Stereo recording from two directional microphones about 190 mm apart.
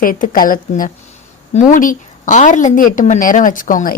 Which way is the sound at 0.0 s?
50° left (ahead or behind).